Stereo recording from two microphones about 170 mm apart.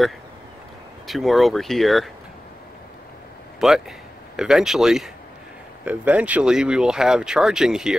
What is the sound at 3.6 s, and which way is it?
Speech, centre (ahead or behind).